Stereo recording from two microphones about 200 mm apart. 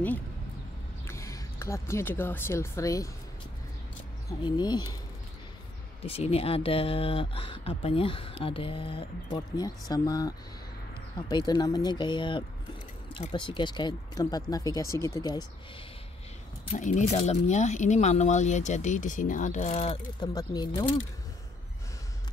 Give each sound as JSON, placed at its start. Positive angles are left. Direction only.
{"t": 1.0, "sound": "speech", "side_deg": 15}
{"t": 4.3, "sound": "speech", "side_deg": 20}
{"t": 6.0, "sound": "speech", "side_deg": 30}
{"t": 16.7, "sound": "speech", "side_deg": 40}